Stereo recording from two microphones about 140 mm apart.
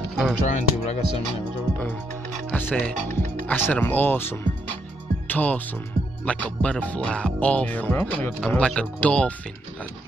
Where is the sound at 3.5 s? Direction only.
10° left (ahead or behind).